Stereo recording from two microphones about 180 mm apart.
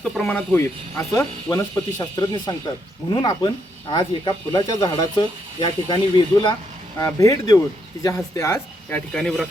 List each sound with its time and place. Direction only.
0.0 s speech: centre (ahead or behind)
9.1 s speech: 5° left (ahead or behind)